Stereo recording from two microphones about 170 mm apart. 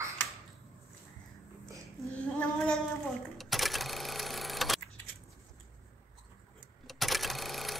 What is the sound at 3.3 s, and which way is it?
Sewing machine, centre (ahead or behind).